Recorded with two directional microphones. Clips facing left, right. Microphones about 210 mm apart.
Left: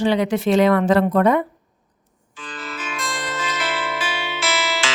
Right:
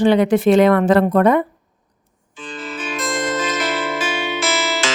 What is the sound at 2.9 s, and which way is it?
Music, 40° right (ahead or behind).